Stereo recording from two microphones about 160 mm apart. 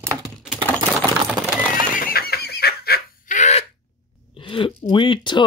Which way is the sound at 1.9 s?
65° left (ahead or behind).